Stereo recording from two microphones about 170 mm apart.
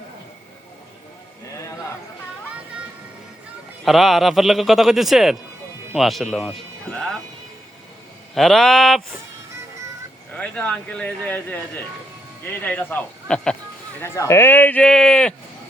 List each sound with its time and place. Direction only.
3.8 s a man's voice: centre (ahead or behind)
8.4 s a man's voice: centre (ahead or behind)
10.3 s speech: 5° left (ahead or behind)
12.6 s speech: 10° left (ahead or behind)
14.0 s speech: 15° left (ahead or behind)